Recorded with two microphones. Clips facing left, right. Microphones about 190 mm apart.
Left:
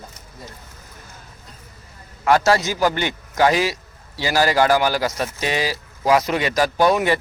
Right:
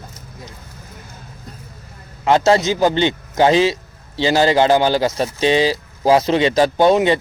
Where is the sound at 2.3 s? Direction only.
25° right (ahead or behind).